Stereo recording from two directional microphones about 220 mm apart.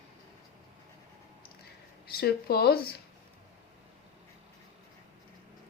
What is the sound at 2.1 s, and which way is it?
Speech, 45° left (ahead or behind).